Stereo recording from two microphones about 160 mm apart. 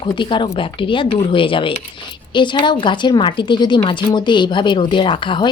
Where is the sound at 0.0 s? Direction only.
30° left (ahead or behind).